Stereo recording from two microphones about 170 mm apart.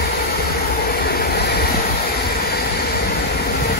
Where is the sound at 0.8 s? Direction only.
65° left (ahead or behind).